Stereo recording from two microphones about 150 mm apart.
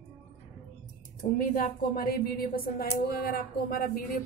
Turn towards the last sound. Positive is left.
turn(degrees=80)